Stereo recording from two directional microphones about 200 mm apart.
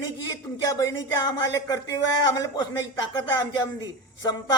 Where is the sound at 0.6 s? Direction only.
20° left (ahead or behind).